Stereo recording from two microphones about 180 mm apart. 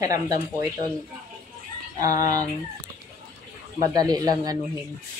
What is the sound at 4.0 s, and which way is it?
Speech, 20° right (ahead or behind).